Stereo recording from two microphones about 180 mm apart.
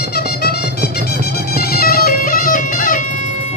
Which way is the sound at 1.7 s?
55° left (ahead or behind).